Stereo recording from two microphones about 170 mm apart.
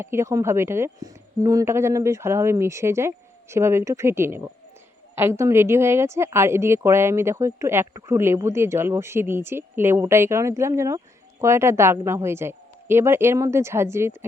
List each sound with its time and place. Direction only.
0.0 s speech: 15° right (ahead or behind)